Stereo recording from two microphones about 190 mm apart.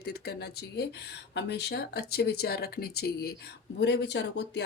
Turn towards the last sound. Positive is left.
turn(degrees=65)  # may be behind; listen again after turning